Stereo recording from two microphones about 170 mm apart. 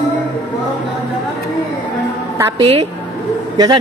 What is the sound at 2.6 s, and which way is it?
A woman's voice, 35° right (ahead or behind).